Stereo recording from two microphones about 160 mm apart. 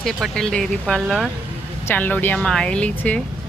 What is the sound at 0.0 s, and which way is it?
Speech, 5° left (ahead or behind).